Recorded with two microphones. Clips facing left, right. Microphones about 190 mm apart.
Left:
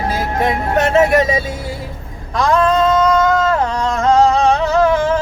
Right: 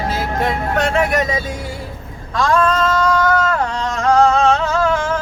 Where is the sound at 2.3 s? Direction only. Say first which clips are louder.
Left 2 dB; 20° left (ahead or behind).